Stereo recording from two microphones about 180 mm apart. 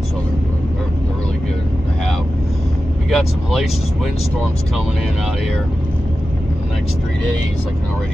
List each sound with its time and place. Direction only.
3.1 s speech: centre (ahead or behind)